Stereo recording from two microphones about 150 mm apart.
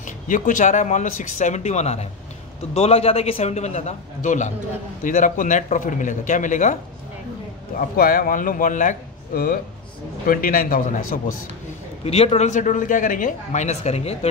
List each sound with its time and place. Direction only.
0.0 s a man's voice: 60° left (ahead or behind)
7.7 s a man's voice: 70° left (ahead or behind)
12.0 s a man's voice: 45° left (ahead or behind)